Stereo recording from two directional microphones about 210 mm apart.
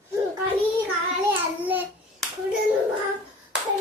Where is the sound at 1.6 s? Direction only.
10° right (ahead or behind).